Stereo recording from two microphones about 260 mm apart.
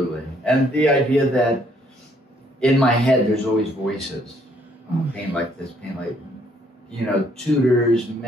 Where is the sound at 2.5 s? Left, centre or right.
Centre.